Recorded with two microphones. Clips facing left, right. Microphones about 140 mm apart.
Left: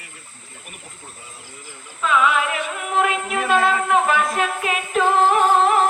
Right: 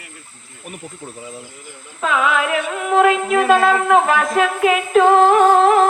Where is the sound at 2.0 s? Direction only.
90° right.